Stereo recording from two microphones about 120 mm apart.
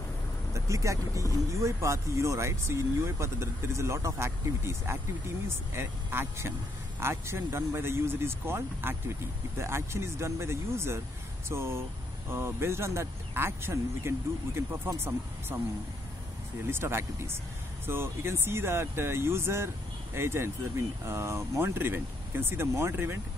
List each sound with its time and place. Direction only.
0.7 s speech: 25° right (ahead or behind)
16.7 s speech: 20° right (ahead or behind)